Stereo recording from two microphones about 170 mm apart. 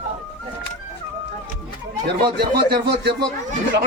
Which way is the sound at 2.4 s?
70° right (ahead or behind).